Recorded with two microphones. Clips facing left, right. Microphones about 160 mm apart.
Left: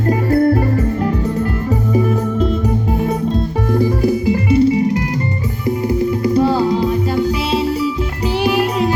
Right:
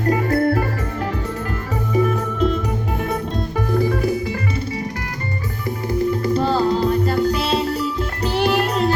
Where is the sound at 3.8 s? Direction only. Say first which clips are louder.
Left 5 dB; 25° left (ahead or behind).